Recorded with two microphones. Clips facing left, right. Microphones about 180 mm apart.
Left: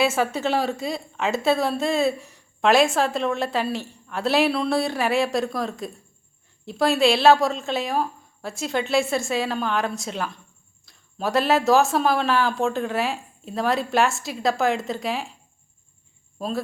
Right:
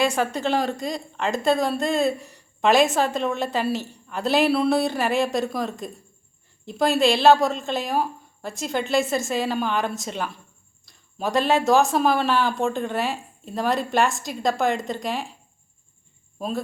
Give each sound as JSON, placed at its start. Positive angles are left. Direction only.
{"t": 0.0, "sound": "a woman's voice", "side_deg": 5}